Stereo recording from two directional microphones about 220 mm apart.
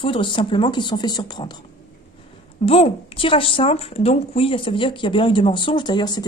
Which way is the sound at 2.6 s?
25° left (ahead or behind).